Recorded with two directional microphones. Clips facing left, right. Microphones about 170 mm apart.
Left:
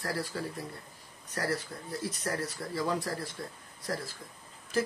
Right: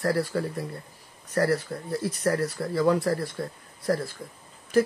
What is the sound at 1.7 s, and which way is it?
Speech, 60° right (ahead or behind).